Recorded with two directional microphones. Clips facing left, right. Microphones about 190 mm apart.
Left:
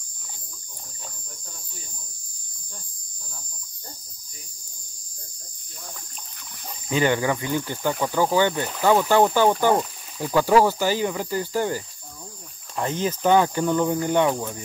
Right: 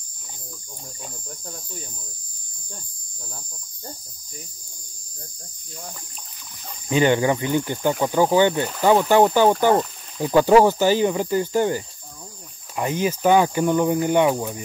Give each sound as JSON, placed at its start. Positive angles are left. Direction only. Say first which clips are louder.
{"t": 6.9, "sound": "speech", "louder": "right 3 dB", "side_deg": -20}